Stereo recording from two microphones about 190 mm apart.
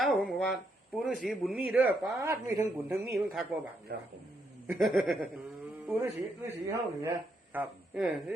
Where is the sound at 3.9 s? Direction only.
55° right (ahead or behind).